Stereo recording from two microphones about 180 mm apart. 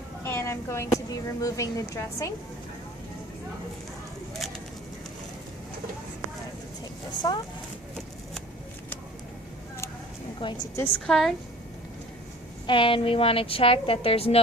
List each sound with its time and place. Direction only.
0.2 s speech: 15° left (ahead or behind)
4.4 s bird: centre (ahead or behind)
7.2 s a woman's voice: 20° left (ahead or behind)
10.4 s a woman's voice: 25° left (ahead or behind)
11.0 s a woman's voice: centre (ahead or behind)
12.6 s a woman's voice: 30° left (ahead or behind)